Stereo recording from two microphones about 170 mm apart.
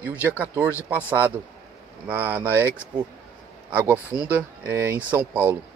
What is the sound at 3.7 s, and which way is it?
Speech, 10° right (ahead or behind).